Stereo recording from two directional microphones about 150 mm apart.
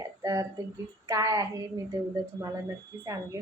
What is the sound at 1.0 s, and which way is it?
Speech, 20° right (ahead or behind).